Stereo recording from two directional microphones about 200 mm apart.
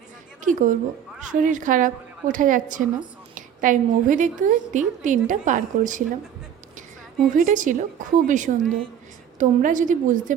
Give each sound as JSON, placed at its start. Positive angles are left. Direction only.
{"t": 0.4, "sound": "a woman's voice", "side_deg": -40}
{"t": 7.3, "sound": "a woman's voice", "side_deg": -40}